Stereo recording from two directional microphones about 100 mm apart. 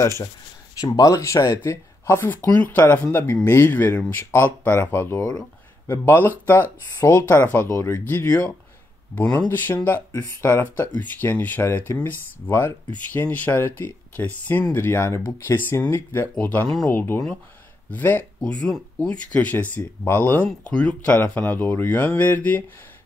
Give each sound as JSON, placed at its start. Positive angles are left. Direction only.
{"t": 0.0, "sound": "speech", "side_deg": 30}
{"t": 9.1, "sound": "speech", "side_deg": 15}
{"t": 20.4, "sound": "speech", "side_deg": 10}